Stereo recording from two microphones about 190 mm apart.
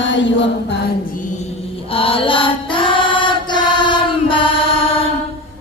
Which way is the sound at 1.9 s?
30° left (ahead or behind).